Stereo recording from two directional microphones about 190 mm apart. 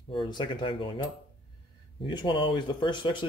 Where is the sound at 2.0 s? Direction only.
25° left (ahead or behind).